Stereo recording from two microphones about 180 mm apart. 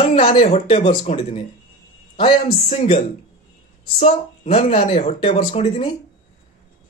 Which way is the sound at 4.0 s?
30° left (ahead or behind).